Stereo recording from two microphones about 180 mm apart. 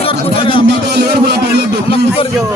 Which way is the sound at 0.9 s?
65° right (ahead or behind).